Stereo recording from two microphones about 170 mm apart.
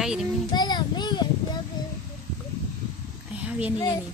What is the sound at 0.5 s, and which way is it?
Child singing, 25° left (ahead or behind).